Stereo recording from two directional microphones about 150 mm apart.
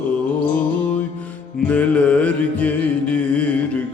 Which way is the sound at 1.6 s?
10° left (ahead or behind).